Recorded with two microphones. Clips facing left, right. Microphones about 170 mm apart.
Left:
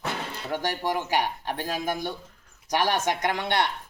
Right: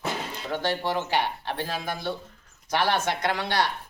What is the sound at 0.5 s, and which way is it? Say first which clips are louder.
Speech: right 1 dB; 15° left (ahead or behind).